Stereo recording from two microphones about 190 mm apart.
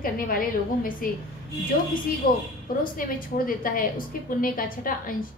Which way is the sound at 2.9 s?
45° left (ahead or behind).